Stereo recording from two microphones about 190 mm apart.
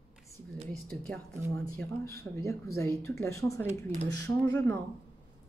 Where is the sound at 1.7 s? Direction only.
15° left (ahead or behind).